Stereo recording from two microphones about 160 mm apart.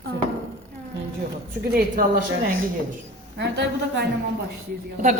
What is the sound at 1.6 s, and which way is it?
Speech, 70° right (ahead or behind).